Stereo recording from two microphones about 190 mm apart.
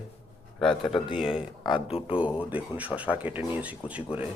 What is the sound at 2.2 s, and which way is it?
Speech, 5° right (ahead or behind).